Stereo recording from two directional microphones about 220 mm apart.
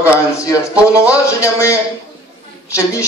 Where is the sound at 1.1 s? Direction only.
15° left (ahead or behind).